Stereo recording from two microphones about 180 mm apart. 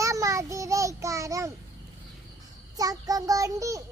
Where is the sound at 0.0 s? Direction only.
15° right (ahead or behind).